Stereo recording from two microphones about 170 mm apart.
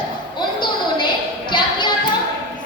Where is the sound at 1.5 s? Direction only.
25° left (ahead or behind).